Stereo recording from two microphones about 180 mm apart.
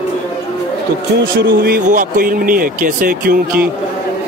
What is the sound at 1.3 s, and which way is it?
Speech, 55° right (ahead or behind).